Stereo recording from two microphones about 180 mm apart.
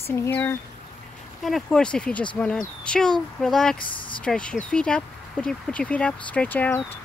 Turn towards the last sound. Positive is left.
turn(degrees=10)  # may be behind; listen again after turning